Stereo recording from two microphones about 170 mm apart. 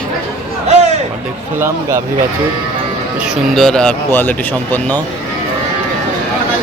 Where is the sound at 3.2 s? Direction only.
Centre (ahead or behind).